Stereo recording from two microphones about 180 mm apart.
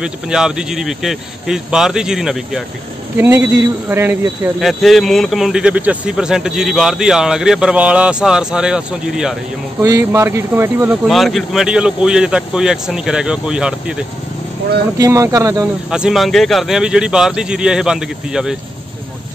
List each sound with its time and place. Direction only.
0.0 s speech: 5° right (ahead or behind)
3.2 s speech: 15° right (ahead or behind)
4.6 s speech: centre (ahead or behind)
9.8 s speech: 15° right (ahead or behind)
11.1 s speech: centre (ahead or behind)
15.0 s speech: 15° right (ahead or behind)
15.9 s speech: 5° right (ahead or behind)